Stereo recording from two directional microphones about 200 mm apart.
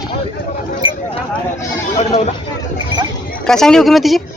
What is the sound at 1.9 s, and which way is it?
Chatter, 35° left (ahead or behind).